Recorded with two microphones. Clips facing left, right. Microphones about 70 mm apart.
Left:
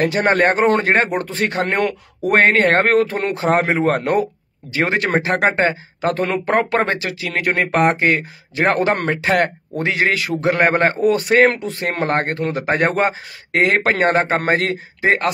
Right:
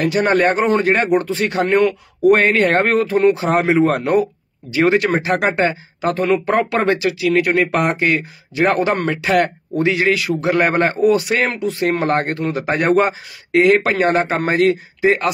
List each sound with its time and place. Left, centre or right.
0.0 s speech: left
1.7 s speech: left
2.3 s speech: left
3.3 s speech: left